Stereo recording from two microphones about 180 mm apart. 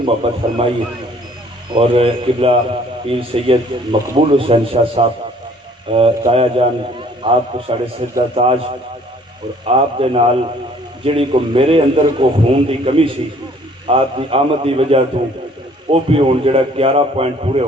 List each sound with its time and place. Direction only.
0.0 s a man's voice: 30° right (ahead or behind)
1.7 s a man's voice: 30° right (ahead or behind)
9.6 s a man's voice: 30° right (ahead or behind)